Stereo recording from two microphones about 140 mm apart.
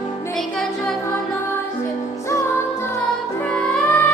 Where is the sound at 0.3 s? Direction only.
Centre (ahead or behind).